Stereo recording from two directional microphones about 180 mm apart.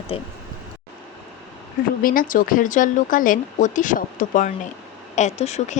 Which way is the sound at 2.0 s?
50° left (ahead or behind).